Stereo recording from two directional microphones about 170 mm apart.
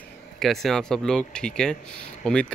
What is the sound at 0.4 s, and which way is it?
Speech, centre (ahead or behind).